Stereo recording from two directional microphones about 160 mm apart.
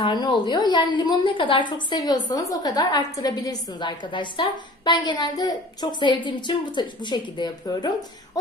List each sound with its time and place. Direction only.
0.0 s a woman's voice: 30° left (ahead or behind)